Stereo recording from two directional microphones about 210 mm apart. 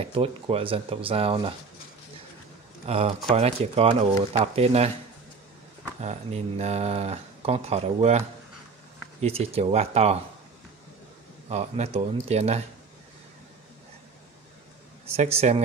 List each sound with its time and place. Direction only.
0.0 s speech: 25° right (ahead or behind)
2.9 s speech: 30° right (ahead or behind)
5.9 s speech: 30° right (ahead or behind)
9.2 s speech: 30° right (ahead or behind)
11.4 s speech: 30° right (ahead or behind)
15.0 s speech: 30° right (ahead or behind)